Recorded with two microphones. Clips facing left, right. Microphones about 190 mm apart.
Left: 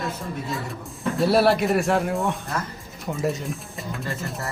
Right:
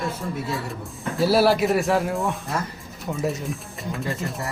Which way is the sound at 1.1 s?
Centre (ahead or behind).